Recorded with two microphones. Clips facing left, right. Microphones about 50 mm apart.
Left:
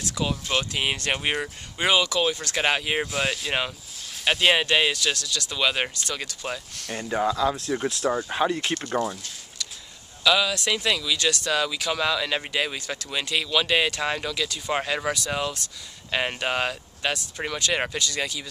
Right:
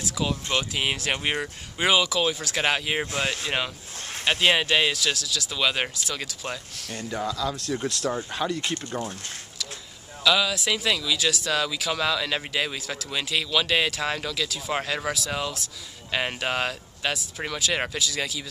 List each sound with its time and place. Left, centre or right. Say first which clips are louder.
0.0 s speech: even; centre
6.9 s speech: left 5 dB; left
10.2 s speech: left 1 dB; centre